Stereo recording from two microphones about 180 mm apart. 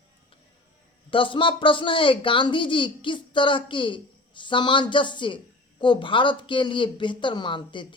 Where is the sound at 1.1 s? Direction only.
30° left (ahead or behind).